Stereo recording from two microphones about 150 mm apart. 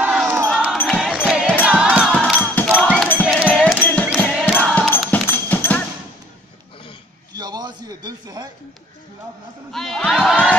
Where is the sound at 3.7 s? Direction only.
10° left (ahead or behind).